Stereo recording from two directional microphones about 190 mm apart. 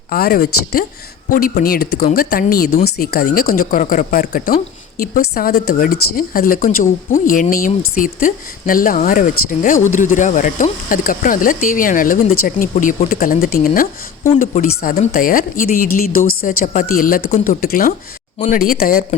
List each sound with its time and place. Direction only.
0.1 s speech: 50° left (ahead or behind)
18.3 s speech: 40° left (ahead or behind)